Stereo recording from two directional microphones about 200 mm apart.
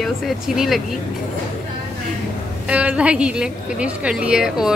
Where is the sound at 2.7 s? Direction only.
5° right (ahead or behind).